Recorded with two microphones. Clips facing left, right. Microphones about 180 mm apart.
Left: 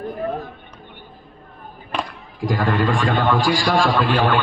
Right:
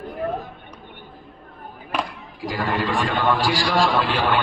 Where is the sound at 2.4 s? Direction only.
50° left (ahead or behind).